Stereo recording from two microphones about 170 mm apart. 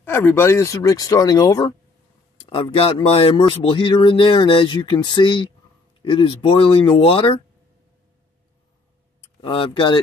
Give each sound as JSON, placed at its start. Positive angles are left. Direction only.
{"t": 0.0, "sound": "speech", "side_deg": 15}
{"t": 2.3, "sound": "speech", "side_deg": 30}
{"t": 9.4, "sound": "speech", "side_deg": 30}